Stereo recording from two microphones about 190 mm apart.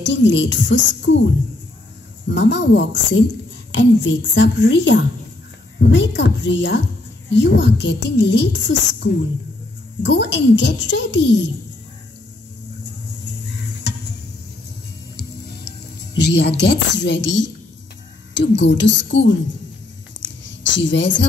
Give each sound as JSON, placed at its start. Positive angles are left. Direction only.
{"t": 0.0, "sound": "a child's voice", "side_deg": 70}
{"t": 2.2, "sound": "a child's voice", "side_deg": 70}
{"t": 16.2, "sound": "a woman's voice", "side_deg": 60}
{"t": 20.2, "sound": "a sound", "side_deg": 70}